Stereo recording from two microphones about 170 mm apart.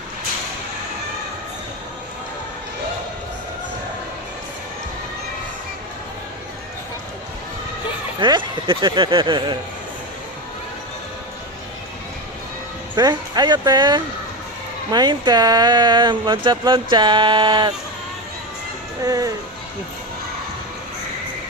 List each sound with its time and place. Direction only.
8.2 s speech: 30° right (ahead or behind)
13.0 s speech: 25° right (ahead or behind)
19.0 s speech: 20° right (ahead or behind)